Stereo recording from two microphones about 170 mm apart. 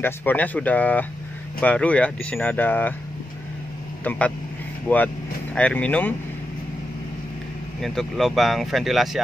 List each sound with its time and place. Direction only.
0.0 s speech: 10° left (ahead or behind)
4.0 s speech: 10° left (ahead or behind)
7.8 s speech: centre (ahead or behind)